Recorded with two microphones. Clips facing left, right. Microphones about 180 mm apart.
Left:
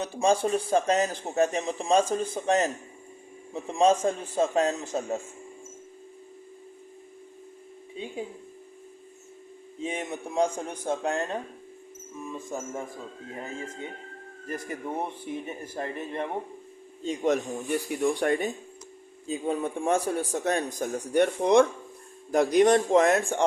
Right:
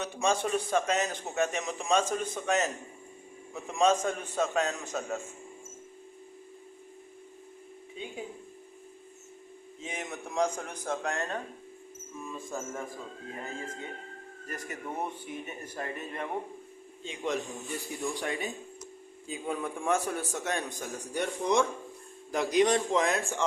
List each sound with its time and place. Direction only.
0.0 s a man's voice: 30° left (ahead or behind)
7.9 s speech: 30° left (ahead or behind)
9.8 s a man's voice: 30° left (ahead or behind)
14.4 s a man's voice: 30° left (ahead or behind)
17.0 s speech: 40° left (ahead or behind)
17.7 s speech: 60° left (ahead or behind)
19.3 s a man's voice: 30° left (ahead or behind)
21.1 s speech: 60° left (ahead or behind)
22.3 s speech: 50° left (ahead or behind)